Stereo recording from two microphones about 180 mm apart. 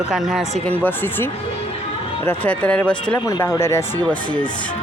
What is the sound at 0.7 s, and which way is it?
Speech, 10° left (ahead or behind).